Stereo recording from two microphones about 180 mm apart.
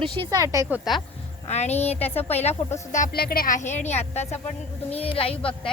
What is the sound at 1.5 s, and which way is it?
Speech, 40° left (ahead or behind).